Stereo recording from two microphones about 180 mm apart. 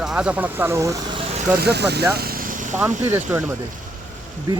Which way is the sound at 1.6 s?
65° right (ahead or behind).